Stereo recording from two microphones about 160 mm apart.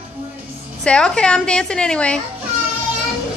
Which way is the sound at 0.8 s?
5° left (ahead or behind).